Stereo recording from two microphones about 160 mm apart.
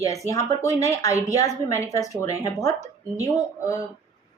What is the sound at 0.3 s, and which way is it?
A woman's voice, 20° left (ahead or behind).